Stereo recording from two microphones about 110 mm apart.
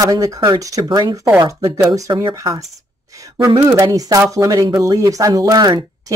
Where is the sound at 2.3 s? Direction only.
30° right (ahead or behind).